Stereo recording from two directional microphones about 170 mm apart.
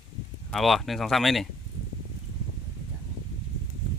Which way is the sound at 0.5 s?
Centre (ahead or behind).